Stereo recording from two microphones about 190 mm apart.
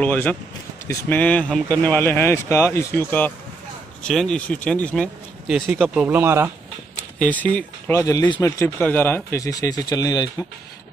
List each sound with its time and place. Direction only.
0.0 s speech: 10° left (ahead or behind)
5.8 s speech: 5° right (ahead or behind)
7.2 s speech: 10° left (ahead or behind)
8.0 s speech: 20° left (ahead or behind)